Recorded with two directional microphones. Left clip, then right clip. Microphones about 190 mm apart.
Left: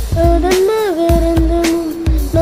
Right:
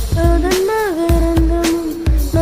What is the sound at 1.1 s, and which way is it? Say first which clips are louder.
Music: left 3 dB; centre (ahead or behind).